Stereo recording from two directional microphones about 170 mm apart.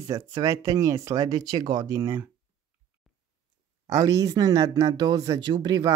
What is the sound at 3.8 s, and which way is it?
Speech, 20° right (ahead or behind).